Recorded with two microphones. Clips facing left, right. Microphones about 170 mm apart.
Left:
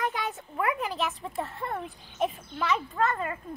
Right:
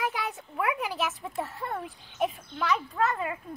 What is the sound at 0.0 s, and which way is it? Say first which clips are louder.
Speech: left 1 dB; centre (ahead or behind).